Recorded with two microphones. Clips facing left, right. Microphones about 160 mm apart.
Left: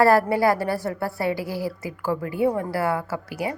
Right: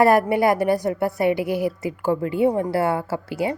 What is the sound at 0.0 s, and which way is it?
A woman's voice, 20° right (ahead or behind).